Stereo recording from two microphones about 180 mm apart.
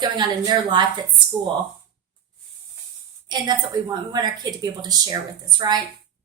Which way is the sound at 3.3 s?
20° right (ahead or behind).